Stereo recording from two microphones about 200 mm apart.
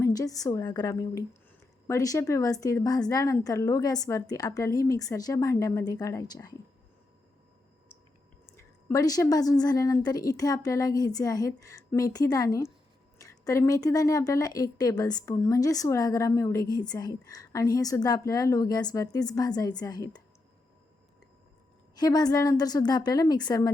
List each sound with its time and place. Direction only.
0.0 s a woman's voice: 20° left (ahead or behind)
8.5 s a woman's voice: 15° left (ahead or behind)
21.9 s a woman's voice: 20° left (ahead or behind)